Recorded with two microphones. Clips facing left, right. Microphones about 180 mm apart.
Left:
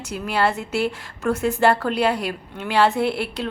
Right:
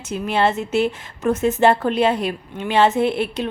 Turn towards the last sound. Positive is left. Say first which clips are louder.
# right 3 dB
turn(degrees=-20)  # may be behind; listen again after turning